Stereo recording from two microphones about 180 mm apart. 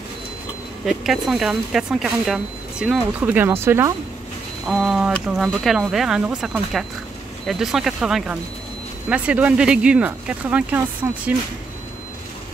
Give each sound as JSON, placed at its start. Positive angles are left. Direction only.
{"t": 0.8, "sound": "speech", "side_deg": 0}
{"t": 4.6, "sound": "speech", "side_deg": 0}